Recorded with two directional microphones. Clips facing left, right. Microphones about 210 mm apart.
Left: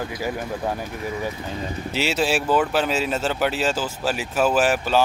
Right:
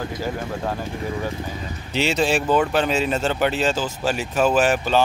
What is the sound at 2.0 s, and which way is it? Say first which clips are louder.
Speech: right 2 dB; 5° left (ahead or behind).